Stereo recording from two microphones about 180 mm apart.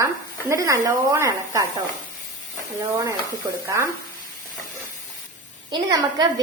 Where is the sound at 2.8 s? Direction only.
15° right (ahead or behind).